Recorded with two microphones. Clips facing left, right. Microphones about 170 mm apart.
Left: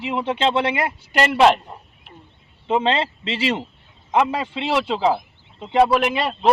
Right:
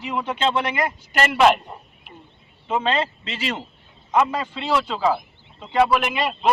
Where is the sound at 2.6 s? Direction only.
25° left (ahead or behind).